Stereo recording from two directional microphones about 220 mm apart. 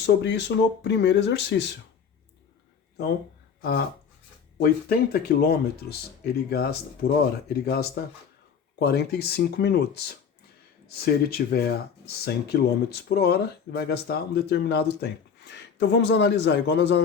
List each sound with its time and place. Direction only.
0.0 s speech: 50° left (ahead or behind)
3.6 s speech: 45° left (ahead or behind)